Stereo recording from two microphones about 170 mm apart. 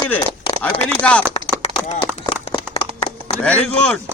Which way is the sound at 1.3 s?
35° left (ahead or behind).